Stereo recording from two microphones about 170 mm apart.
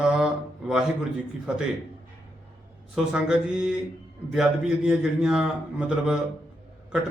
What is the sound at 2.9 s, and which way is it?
Speech, 5° right (ahead or behind).